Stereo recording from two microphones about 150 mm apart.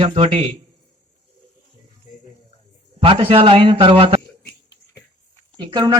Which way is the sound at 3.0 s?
40° right (ahead or behind).